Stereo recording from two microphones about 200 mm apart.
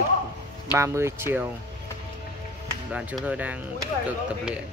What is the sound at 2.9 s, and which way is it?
Speech, 5° right (ahead or behind).